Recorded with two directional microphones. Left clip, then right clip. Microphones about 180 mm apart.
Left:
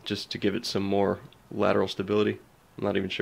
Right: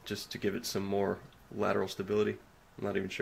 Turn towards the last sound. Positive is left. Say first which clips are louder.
# left 7 dB
turn(degrees=45)  # may be behind; listen again after turning